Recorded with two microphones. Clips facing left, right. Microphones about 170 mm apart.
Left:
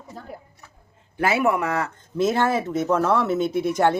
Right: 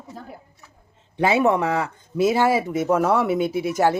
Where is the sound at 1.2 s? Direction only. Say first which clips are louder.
Right 2 dB; 20° right (ahead or behind).